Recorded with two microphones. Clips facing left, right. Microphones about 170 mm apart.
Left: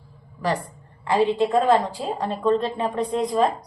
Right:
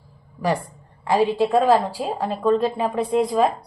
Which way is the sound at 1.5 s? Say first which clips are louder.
Right 2 dB; 10° right (ahead or behind).